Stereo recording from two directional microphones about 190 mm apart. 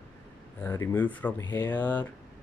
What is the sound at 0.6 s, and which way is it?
Speech, 15° left (ahead or behind).